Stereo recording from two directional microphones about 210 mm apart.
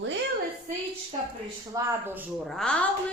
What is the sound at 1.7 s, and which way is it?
A woman's voice, 10° right (ahead or behind).